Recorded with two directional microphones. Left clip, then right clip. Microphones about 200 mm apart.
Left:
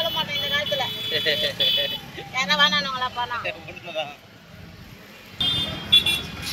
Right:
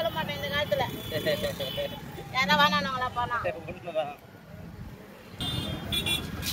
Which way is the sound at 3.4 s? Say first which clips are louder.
Left 2 dB; 45° right (ahead or behind).